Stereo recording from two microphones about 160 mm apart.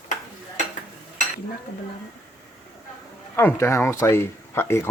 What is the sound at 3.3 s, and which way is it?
Speech, 15° left (ahead or behind).